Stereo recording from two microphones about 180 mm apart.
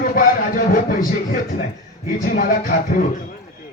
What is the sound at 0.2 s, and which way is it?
A man's voice, 50° left (ahead or behind).